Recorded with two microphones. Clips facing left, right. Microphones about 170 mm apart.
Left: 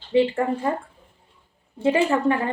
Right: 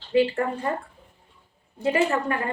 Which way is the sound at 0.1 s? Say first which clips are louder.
Left 2 dB; 25° left (ahead or behind).